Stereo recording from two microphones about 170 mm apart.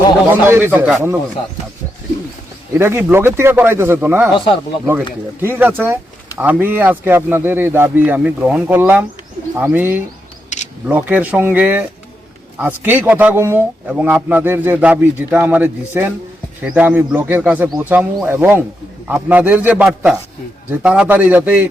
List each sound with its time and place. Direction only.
0.3 s a man's voice: 10° right (ahead or behind)
2.7 s a man's voice: 15° right (ahead or behind)
5.4 s a man's voice: 10° right (ahead or behind)